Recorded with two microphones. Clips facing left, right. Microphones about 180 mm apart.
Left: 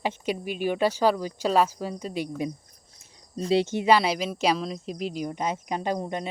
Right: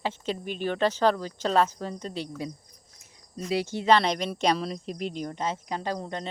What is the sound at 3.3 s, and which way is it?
Speech, 30° left (ahead or behind).